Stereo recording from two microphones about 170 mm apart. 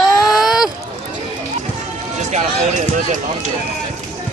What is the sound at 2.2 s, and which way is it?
Run, 45° right (ahead or behind).